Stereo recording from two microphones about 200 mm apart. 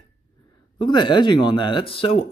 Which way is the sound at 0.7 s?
20° left (ahead or behind).